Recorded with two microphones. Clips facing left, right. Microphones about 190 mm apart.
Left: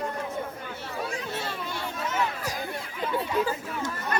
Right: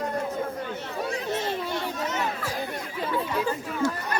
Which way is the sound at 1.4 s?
20° right (ahead or behind).